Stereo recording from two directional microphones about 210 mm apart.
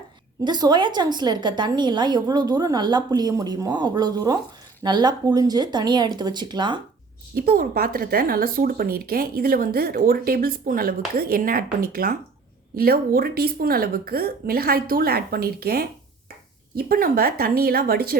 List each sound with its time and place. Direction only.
0.4 s a woman's voice: 20° right (ahead or behind)
7.3 s speech: 45° right (ahead or behind)